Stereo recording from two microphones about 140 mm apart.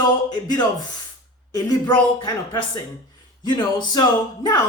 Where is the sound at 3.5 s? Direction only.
30° left (ahead or behind).